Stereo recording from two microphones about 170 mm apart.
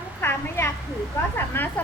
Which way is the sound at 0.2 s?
15° left (ahead or behind).